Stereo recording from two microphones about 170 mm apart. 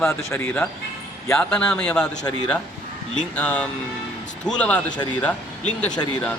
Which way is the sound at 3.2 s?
5° left (ahead or behind).